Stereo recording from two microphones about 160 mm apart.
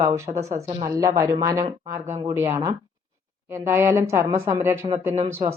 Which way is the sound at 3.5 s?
15° right (ahead or behind).